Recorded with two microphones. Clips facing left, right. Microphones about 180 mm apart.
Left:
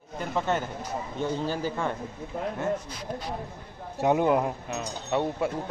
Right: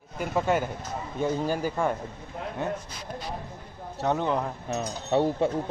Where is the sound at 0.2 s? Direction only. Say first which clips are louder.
Right 3 dB; 10° right (ahead or behind).